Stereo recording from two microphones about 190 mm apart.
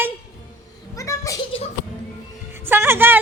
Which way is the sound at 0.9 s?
15° left (ahead or behind).